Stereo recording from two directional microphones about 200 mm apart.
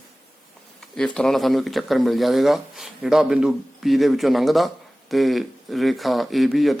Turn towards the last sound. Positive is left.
turn(degrees=0)  # may be behind; listen again after turning